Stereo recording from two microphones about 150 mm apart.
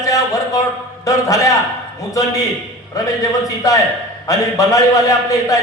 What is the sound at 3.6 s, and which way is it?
A man's voice, 20° left (ahead or behind).